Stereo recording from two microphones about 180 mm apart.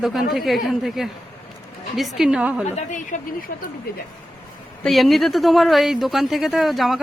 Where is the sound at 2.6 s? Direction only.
40° left (ahead or behind).